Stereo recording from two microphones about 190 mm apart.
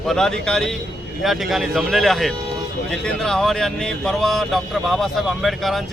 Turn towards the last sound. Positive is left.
turn(degrees=0)  # may be behind; listen again after turning